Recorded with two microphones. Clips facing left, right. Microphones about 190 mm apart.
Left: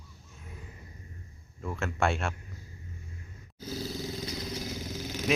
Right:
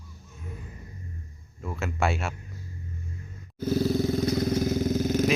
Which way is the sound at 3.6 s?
55° right (ahead or behind).